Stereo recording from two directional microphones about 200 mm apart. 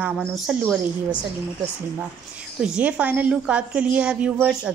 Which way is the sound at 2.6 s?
5° right (ahead or behind).